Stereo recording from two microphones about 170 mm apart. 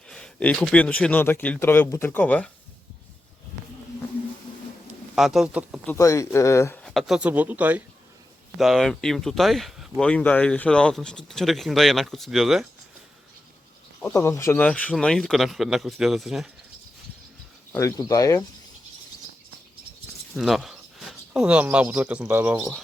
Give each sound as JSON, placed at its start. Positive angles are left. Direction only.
{"t": 0.1, "sound": "a man's voice", "side_deg": 5}
{"t": 5.1, "sound": "speech", "side_deg": 0}
{"t": 5.8, "sound": "a man's voice", "side_deg": 15}
{"t": 6.8, "sound": "speech", "side_deg": 0}
{"t": 14.0, "sound": "speech", "side_deg": 15}
{"t": 17.7, "sound": "speech", "side_deg": 20}
{"t": 20.3, "sound": "speech", "side_deg": 0}